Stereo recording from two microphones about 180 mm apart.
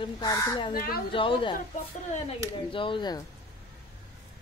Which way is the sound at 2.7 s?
30° left (ahead or behind).